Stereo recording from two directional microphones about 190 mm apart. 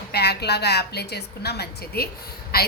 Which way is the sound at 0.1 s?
60° left (ahead or behind).